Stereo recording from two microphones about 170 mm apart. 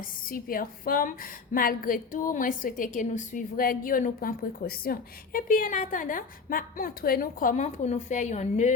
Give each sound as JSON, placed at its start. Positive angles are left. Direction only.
{"t": 0.0, "sound": "a woman's voice", "side_deg": 55}